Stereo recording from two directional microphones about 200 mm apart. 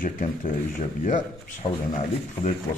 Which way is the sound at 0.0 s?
40° left (ahead or behind).